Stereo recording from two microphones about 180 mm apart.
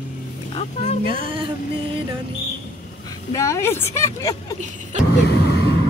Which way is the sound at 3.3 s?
15° left (ahead or behind).